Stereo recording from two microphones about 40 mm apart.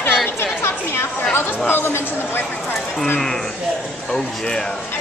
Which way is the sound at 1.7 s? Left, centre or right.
Left.